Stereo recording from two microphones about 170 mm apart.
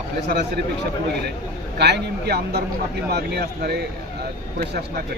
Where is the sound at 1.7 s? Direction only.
75° right (ahead or behind).